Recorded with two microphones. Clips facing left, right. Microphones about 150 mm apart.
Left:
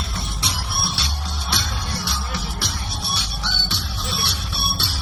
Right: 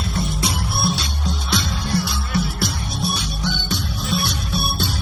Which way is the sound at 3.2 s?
45° right (ahead or behind).